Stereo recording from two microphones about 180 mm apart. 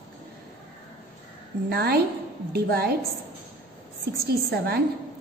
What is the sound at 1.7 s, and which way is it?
A woman's voice, 60° right (ahead or behind).